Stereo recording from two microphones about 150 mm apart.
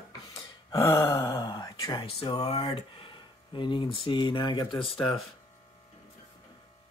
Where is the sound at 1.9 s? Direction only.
35° left (ahead or behind).